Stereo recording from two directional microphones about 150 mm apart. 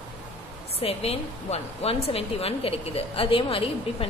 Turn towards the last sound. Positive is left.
turn(degrees=35)  # may be behind; listen again after turning